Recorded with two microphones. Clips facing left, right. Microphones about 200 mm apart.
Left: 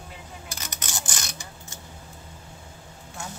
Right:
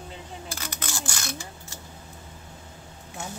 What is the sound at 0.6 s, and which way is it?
Speech, 20° left (ahead or behind).